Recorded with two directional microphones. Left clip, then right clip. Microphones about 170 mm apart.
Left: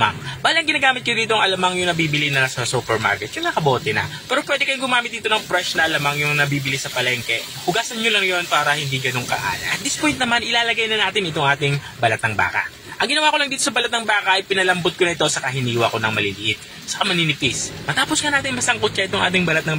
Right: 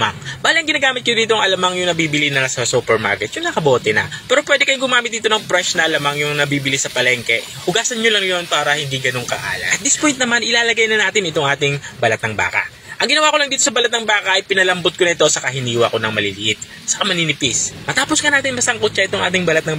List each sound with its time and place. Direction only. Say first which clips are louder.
0.0 s a man's voice: right 1 dB; 20° right (ahead or behind)
10.0 s speech: right 2 dB; 25° right (ahead or behind)